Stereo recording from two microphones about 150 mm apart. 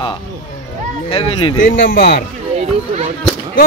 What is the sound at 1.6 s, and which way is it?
Speech, 70° left (ahead or behind).